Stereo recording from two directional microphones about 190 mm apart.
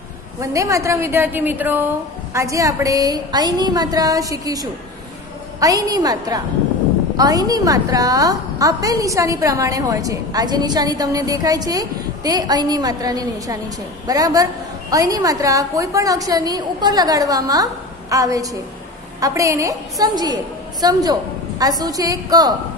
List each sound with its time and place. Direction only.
0.4 s a woman's voice: 15° right (ahead or behind)